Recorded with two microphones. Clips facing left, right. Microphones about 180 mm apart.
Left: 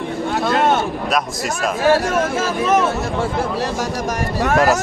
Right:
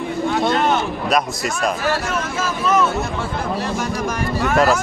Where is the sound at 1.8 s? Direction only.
45° left (ahead or behind).